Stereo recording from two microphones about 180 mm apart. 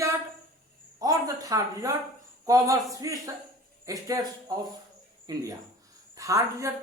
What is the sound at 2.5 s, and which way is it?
A man's voice, 20° right (ahead or behind).